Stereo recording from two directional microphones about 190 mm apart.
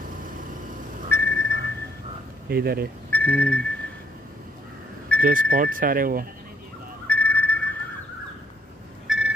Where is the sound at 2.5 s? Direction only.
55° right (ahead or behind).